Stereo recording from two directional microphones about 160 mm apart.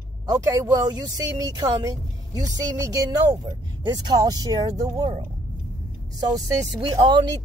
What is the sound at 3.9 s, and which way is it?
Speech, 25° right (ahead or behind).